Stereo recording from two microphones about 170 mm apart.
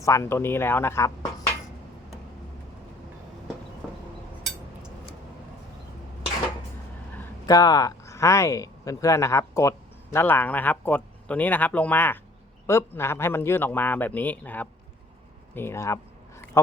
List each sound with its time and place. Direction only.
0.0 s a man's voice: 15° left (ahead or behind)
7.4 s a man's voice: 20° left (ahead or behind)
15.5 s a sound: 15° left (ahead or behind)